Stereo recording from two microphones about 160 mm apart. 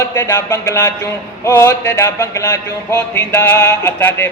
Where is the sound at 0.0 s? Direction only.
20° left (ahead or behind).